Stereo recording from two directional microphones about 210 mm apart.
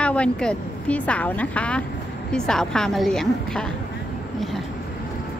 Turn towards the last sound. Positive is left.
turn(degrees=5)  # may be behind; listen again after turning